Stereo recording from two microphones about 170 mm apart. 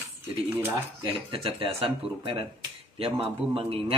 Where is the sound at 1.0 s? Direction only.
30° right (ahead or behind).